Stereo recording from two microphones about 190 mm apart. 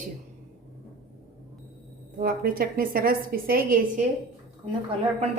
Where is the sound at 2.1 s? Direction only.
50° right (ahead or behind).